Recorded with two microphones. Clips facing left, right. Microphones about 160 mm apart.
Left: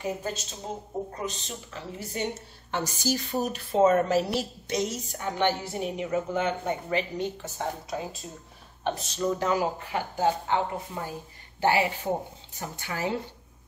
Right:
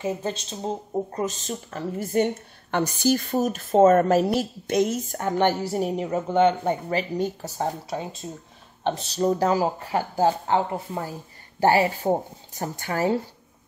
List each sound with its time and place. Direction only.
0.0 s speech: 25° right (ahead or behind)
1.1 s a woman's voice: 45° right (ahead or behind)
11.6 s a woman's voice: 40° right (ahead or behind)